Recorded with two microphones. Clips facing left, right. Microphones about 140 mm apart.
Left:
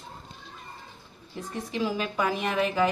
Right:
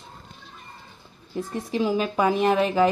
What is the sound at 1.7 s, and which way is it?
A woman's voice, 35° right (ahead or behind).